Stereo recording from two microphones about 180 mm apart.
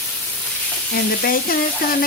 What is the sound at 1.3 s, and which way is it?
Speech, 55° left (ahead or behind).